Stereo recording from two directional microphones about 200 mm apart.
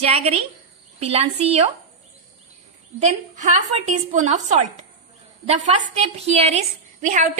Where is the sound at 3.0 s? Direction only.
35° right (ahead or behind).